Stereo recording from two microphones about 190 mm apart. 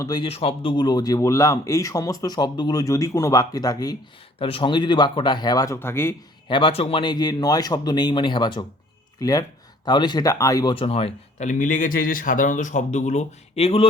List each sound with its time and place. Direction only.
0.0 s speech: 25° left (ahead or behind)
6.5 s speech: 30° left (ahead or behind)